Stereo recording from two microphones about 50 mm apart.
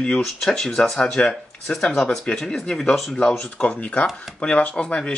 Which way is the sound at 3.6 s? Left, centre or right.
Left.